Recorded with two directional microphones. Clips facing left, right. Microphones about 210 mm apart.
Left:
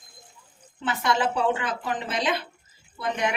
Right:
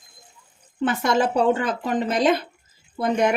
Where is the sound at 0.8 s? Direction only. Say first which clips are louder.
Right 4 dB; 45° right (ahead or behind).